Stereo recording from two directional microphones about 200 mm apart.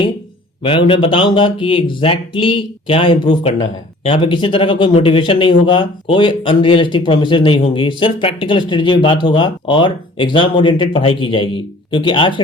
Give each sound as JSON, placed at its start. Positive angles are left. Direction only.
{"t": 0.6, "sound": "speech", "side_deg": 25}